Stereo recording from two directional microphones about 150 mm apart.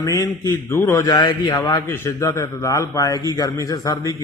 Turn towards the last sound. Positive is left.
turn(degrees=25)  # may be behind; listen again after turning